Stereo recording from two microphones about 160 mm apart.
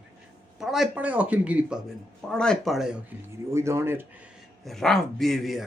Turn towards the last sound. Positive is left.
turn(degrees=0)  # may be behind; listen again after turning